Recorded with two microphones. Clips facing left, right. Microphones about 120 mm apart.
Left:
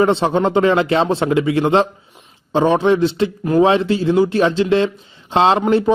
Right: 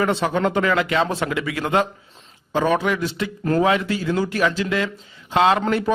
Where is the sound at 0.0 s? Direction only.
25° left (ahead or behind).